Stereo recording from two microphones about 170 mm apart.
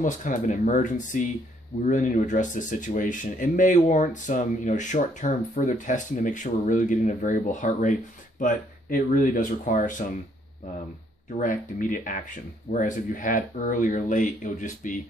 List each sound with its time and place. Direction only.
0.0 s speech: 50° left (ahead or behind)
11.3 s speech: 55° left (ahead or behind)